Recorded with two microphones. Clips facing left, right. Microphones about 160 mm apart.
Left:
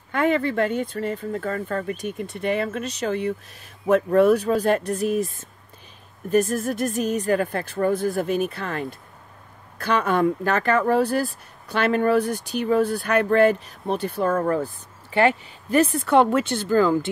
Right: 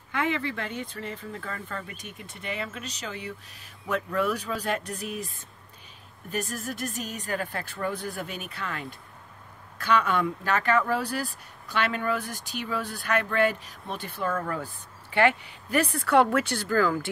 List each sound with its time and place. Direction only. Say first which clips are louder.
0.1 s speech: left 8 dB; 45° left (ahead or behind)
6.3 s speech: left 12 dB; 45° left (ahead or behind); by 17.1 s 25° left (ahead or behind)